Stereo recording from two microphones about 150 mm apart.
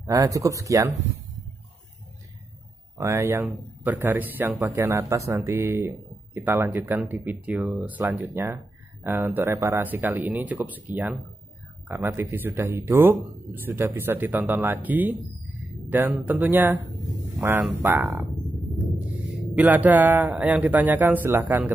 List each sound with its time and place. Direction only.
0.0 s speech: 20° right (ahead or behind)
3.0 s speech: 20° right (ahead or behind)
19.5 s speech: 10° right (ahead or behind)